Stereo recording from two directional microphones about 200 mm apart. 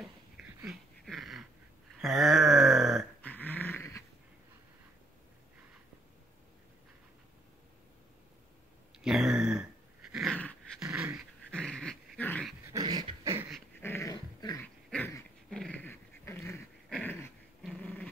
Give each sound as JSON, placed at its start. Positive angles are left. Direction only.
{"t": 0.7, "sound": "dog", "side_deg": 0}
{"t": 9.0, "sound": "a sound", "side_deg": 0}
{"t": 10.1, "sound": "dog", "side_deg": 0}
{"t": 12.7, "sound": "dog", "side_deg": -20}
{"t": 13.7, "sound": "dog", "side_deg": 10}
{"t": 14.6, "sound": "dog", "side_deg": 10}